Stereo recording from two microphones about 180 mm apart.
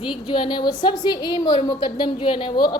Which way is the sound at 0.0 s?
25° left (ahead or behind).